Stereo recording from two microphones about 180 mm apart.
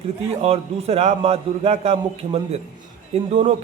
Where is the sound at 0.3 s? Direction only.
35° right (ahead or behind).